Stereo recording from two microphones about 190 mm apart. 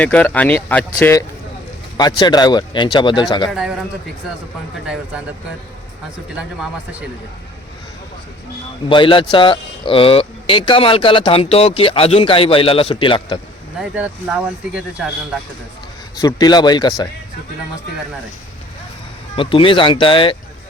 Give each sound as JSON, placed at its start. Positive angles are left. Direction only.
{"t": 0.0, "sound": "speech", "side_deg": 10}
{"t": 2.0, "sound": "speech", "side_deg": 20}
{"t": 3.5, "sound": "speech", "side_deg": -5}
{"t": 8.9, "sound": "speech", "side_deg": 25}
{"t": 13.7, "sound": "speech", "side_deg": -5}
{"t": 16.1, "sound": "speech", "side_deg": 20}
{"t": 19.4, "sound": "speech", "side_deg": 25}